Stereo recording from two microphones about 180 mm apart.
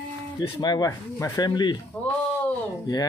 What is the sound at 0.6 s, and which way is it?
Speech, 20° left (ahead or behind).